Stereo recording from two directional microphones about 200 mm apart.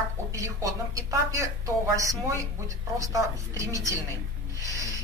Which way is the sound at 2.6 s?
15° right (ahead or behind).